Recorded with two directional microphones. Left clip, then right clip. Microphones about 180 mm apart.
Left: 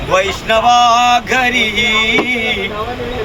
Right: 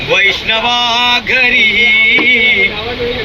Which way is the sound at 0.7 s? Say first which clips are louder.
Left 4 dB; 20° left (ahead or behind).